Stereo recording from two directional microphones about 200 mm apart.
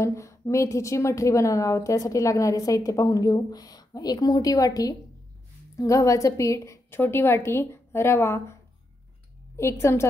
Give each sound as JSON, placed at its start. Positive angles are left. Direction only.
{"t": 0.0, "sound": "a woman's voice", "side_deg": 15}
{"t": 9.6, "sound": "a woman's voice", "side_deg": 15}